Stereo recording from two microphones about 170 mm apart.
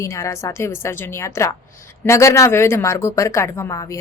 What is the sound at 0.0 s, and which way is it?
A woman's voice, 15° left (ahead or behind).